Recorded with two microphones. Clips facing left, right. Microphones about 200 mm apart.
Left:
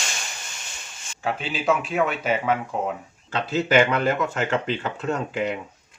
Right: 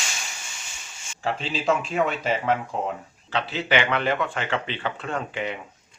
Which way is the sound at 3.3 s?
45° left (ahead or behind).